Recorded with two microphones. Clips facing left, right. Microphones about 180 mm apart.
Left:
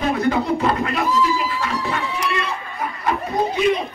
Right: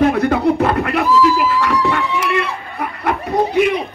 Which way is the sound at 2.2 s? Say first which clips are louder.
Right 5 dB; 60° right (ahead or behind).